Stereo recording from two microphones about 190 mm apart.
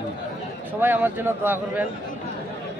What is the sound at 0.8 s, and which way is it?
Speech, 10° right (ahead or behind).